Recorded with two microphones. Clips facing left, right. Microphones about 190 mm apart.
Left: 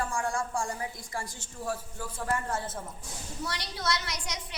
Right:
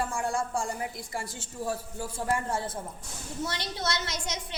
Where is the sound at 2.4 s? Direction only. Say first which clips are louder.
Right 2 dB; 10° right (ahead or behind).